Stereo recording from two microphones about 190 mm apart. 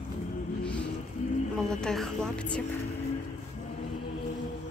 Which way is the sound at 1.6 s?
5° left (ahead or behind).